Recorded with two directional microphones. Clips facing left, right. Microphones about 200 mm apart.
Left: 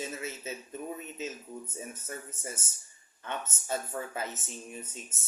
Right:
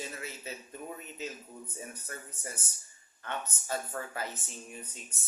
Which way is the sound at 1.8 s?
20° left (ahead or behind).